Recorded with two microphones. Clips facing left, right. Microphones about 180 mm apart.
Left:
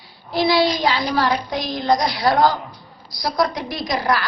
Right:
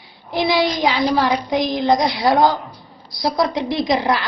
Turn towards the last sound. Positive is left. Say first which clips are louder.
# right 3 dB
turn(degrees=-20)  # may be behind; listen again after turning